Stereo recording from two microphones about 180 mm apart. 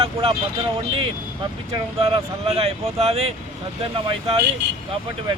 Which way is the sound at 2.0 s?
30° right (ahead or behind).